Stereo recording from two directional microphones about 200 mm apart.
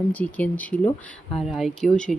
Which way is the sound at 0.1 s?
10° left (ahead or behind).